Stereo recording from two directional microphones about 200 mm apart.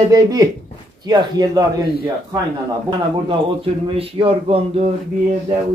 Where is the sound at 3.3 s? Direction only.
25° right (ahead or behind).